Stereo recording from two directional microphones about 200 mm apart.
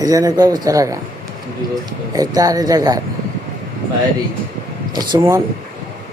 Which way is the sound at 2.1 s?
20° right (ahead or behind).